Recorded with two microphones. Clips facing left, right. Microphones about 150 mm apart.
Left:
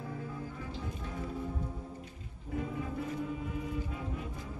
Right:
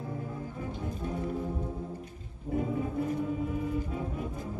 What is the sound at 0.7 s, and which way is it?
Music, 45° right (ahead or behind).